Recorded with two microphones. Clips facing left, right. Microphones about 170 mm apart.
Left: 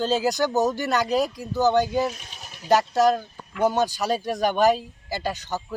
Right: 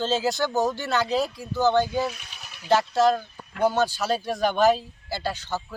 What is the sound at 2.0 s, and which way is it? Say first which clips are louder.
Speech: left 2 dB; 40° left (ahead or behind).